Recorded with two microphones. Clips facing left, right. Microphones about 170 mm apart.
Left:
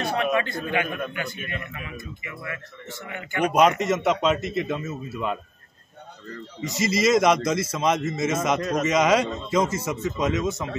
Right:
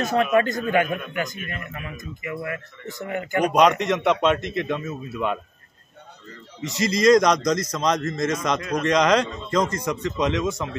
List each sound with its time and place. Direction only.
0.0 s a man's voice: 45° right (ahead or behind)
3.5 s a man's voice: 5° left (ahead or behind)
6.6 s a man's voice: centre (ahead or behind)